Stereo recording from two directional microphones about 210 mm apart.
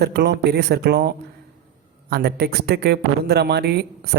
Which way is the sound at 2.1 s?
50° right (ahead or behind).